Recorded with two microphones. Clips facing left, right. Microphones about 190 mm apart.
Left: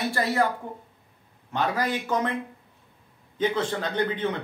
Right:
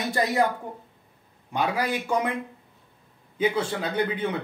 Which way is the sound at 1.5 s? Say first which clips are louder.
Even; 10° right (ahead or behind).